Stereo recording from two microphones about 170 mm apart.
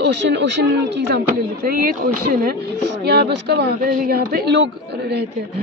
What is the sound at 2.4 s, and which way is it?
Speech, 70° right (ahead or behind).